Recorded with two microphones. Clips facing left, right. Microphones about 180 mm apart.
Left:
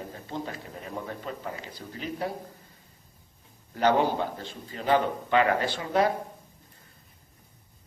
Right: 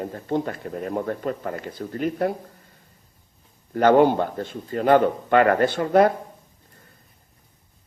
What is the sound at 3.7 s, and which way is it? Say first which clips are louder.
A man's voice: right 8 dB; 50° right (ahead or behind).